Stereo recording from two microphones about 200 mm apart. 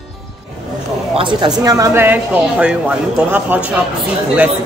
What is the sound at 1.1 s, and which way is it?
Speech, 25° right (ahead or behind).